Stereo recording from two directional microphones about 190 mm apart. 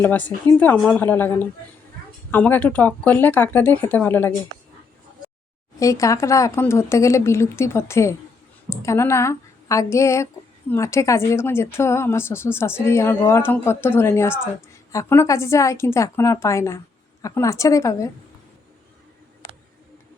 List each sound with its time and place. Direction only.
0.0 s a woman's voice: 10° left (ahead or behind)
5.8 s a woman's voice: 15° left (ahead or behind)
19.4 s a sound: 20° left (ahead or behind)